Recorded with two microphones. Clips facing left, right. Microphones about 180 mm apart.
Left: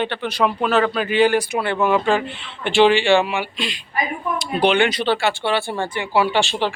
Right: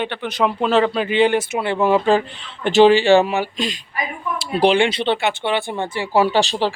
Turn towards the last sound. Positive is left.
turn(degrees=-35)  # may be behind; listen again after turning